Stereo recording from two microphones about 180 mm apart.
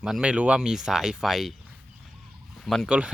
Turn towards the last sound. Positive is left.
turn(degrees=-5)  # may be behind; listen again after turning